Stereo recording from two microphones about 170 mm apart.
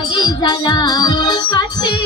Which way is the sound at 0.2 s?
25° left (ahead or behind).